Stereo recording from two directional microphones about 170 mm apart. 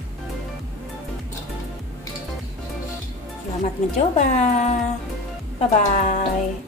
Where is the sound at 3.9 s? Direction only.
40° left (ahead or behind).